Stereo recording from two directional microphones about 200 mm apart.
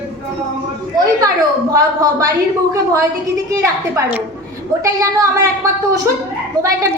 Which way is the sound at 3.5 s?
15° right (ahead or behind).